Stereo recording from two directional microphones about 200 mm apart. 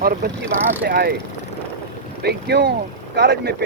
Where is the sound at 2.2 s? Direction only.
55° right (ahead or behind).